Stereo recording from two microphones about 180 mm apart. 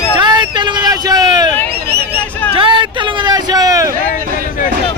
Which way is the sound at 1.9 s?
60° right (ahead or behind).